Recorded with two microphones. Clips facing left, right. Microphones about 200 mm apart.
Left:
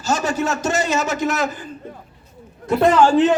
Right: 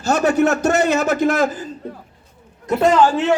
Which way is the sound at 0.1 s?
60° right (ahead or behind).